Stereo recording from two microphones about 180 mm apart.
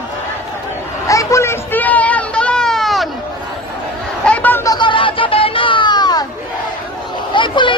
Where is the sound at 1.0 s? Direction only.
20° left (ahead or behind); by 3.1 s centre (ahead or behind).